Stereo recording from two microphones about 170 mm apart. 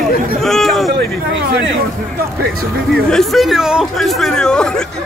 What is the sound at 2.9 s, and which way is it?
Speech, centre (ahead or behind).